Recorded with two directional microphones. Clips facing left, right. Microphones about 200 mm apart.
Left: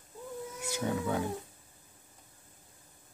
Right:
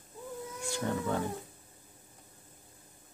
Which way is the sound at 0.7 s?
5° left (ahead or behind).